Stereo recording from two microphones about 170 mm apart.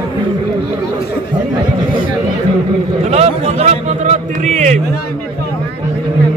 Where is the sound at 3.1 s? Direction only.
40° right (ahead or behind).